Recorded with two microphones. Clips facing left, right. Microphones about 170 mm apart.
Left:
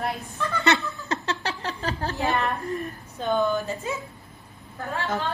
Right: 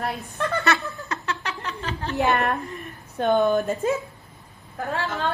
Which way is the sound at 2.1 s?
70° right (ahead or behind).